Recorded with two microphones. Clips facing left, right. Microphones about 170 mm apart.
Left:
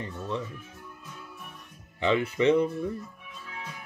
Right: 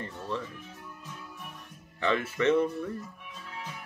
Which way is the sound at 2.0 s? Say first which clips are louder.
Left 3 dB; 15° left (ahead or behind).